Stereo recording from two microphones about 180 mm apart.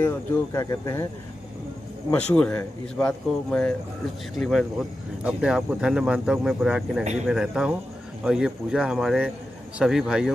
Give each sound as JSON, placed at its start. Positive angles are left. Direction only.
{"t": 0.0, "sound": "speech", "side_deg": 15}
{"t": 2.0, "sound": "speech", "side_deg": 5}